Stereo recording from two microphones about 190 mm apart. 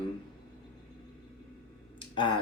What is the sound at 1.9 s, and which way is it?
Finger snapping, 25° left (ahead or behind).